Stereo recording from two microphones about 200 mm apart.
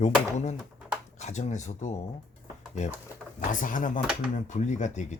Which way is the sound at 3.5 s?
40° left (ahead or behind).